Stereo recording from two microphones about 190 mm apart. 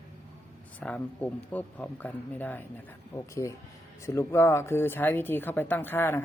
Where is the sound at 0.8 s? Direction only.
5° left (ahead or behind).